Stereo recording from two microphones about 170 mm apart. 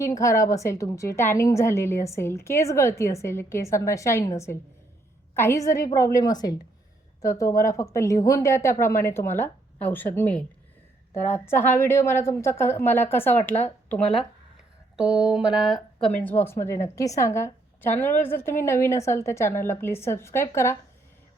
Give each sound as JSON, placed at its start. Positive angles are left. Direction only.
{"t": 0.0, "sound": "a woman's voice", "side_deg": 20}